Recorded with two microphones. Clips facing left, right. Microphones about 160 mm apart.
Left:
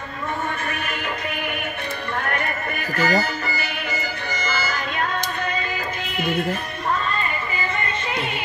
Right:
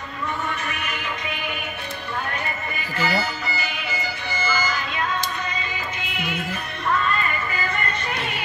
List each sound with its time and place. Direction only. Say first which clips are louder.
2.2 s music: left 3 dB; 60° left (ahead or behind)
3.0 s music: left 3 dB; 45° left (ahead or behind)